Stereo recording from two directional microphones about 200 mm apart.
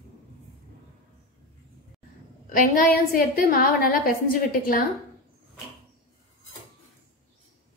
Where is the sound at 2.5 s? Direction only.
45° left (ahead or behind).